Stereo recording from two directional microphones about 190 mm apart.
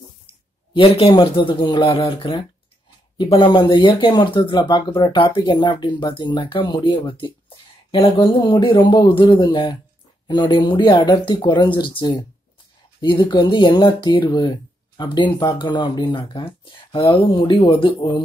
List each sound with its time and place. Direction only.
0.7 s speech: 30° left (ahead or behind)